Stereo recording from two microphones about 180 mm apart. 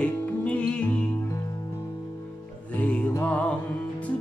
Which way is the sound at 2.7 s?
5° left (ahead or behind).